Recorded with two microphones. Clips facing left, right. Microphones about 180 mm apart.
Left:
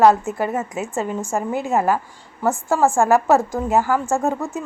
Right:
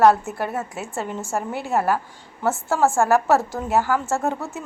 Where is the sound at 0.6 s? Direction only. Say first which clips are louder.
Left 4 dB; centre (ahead or behind).